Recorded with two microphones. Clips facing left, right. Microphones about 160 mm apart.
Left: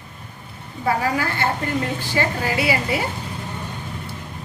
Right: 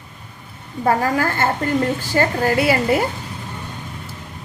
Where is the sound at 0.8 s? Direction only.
45° right (ahead or behind).